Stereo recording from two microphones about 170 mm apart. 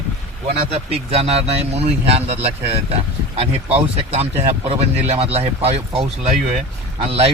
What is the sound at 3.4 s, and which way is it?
Speech, 35° right (ahead or behind).